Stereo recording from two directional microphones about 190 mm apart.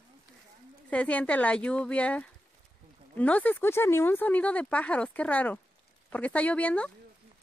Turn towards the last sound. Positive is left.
turn(degrees=5)  # may be behind; listen again after turning